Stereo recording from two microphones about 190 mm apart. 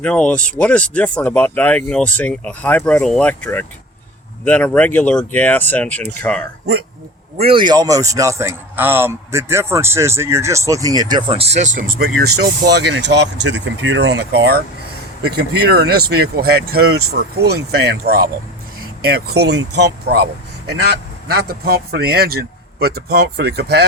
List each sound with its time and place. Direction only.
0.0 s speech: 5° left (ahead or behind)
7.3 s a man's voice: 30° right (ahead or behind); by 23.8 s 60° right (ahead or behind)